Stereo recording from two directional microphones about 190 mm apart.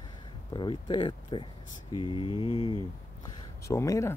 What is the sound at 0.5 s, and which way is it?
Speech, 25° left (ahead or behind).